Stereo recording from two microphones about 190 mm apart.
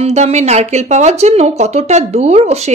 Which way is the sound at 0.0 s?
35° right (ahead or behind).